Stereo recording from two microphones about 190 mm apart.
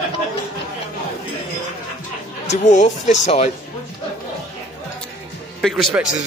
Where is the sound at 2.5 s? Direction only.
40° left (ahead or behind).